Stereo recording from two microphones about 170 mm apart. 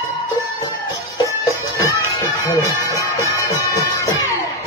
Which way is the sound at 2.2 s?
20° left (ahead or behind).